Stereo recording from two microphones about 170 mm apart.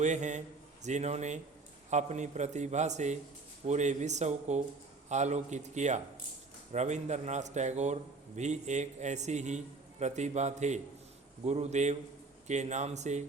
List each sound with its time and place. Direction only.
0.0 s a man's voice: 45° right (ahead or behind)